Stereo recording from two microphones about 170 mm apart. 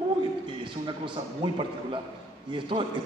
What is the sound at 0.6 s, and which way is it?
A man's voice, 30° right (ahead or behind).